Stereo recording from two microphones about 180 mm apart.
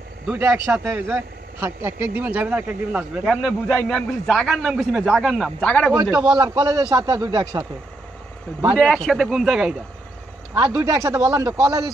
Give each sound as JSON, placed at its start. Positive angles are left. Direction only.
{"t": 0.3, "sound": "speech", "side_deg": -10}
{"t": 3.6, "sound": "a man's voice", "side_deg": 5}
{"t": 6.3, "sound": "a man's voice", "side_deg": -20}
{"t": 8.7, "sound": "a man's voice", "side_deg": 5}
{"t": 10.7, "sound": "speech", "side_deg": -15}